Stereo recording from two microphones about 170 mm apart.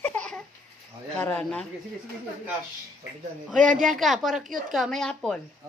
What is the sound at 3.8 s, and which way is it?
Speech, centre (ahead or behind).